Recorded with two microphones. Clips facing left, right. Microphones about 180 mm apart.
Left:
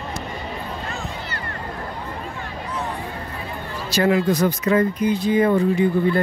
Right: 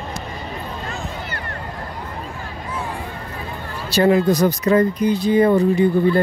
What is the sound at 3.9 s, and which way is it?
Speech, 35° right (ahead or behind).